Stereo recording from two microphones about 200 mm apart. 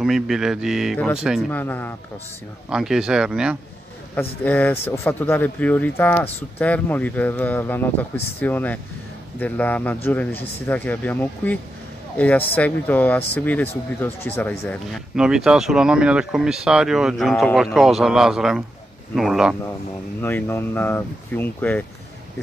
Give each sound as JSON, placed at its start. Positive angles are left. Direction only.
{"t": 0.0, "sound": "speech", "side_deg": 0}
{"t": 1.5, "sound": "speech", "side_deg": 10}
{"t": 2.7, "sound": "speech", "side_deg": -5}
{"t": 4.1, "sound": "speech", "side_deg": 10}
{"t": 15.1, "sound": "speech", "side_deg": -5}
{"t": 20.2, "sound": "speech", "side_deg": 10}